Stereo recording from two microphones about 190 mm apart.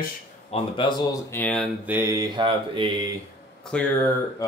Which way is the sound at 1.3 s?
10° left (ahead or behind).